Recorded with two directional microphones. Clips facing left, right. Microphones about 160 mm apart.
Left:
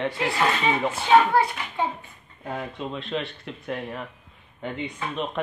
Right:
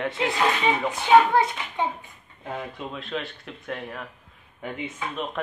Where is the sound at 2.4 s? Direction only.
Centre (ahead or behind).